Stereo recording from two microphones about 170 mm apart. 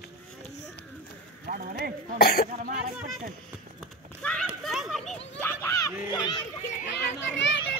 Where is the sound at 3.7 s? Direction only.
5° left (ahead or behind).